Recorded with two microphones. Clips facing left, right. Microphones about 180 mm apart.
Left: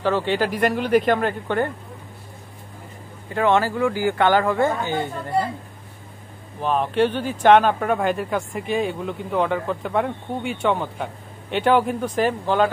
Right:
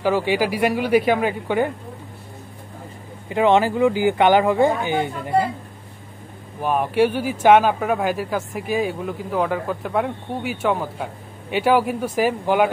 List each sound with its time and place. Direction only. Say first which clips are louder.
0.0 s speech: right 2 dB; 10° right (ahead or behind)
3.3 s speech: right 3 dB; 15° right (ahead or behind)
6.6 s speech: right 1 dB; 10° right (ahead or behind)